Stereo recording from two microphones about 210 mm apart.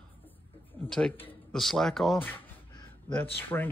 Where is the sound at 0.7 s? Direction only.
5° left (ahead or behind).